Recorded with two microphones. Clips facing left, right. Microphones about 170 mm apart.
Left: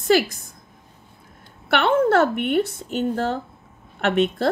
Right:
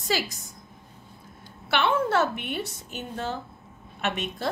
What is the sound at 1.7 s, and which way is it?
A woman's voice, 55° left (ahead or behind).